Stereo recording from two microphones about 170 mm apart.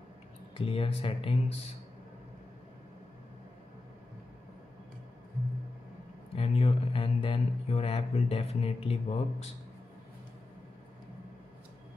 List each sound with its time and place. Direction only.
0.6 s speech: 35° left (ahead or behind)
6.3 s speech: 35° left (ahead or behind)